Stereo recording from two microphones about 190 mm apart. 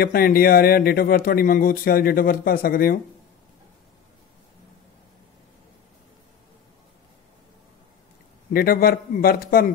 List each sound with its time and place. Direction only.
0.0 s speech: 50° left (ahead or behind)
8.5 s speech: 50° left (ahead or behind)